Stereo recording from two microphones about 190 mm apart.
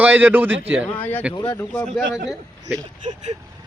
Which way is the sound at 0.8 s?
10° left (ahead or behind).